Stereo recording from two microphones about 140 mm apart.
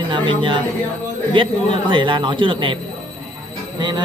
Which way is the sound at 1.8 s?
35° right (ahead or behind).